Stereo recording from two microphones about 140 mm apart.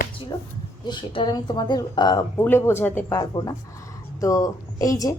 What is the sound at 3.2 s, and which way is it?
A woman's voice, 25° left (ahead or behind).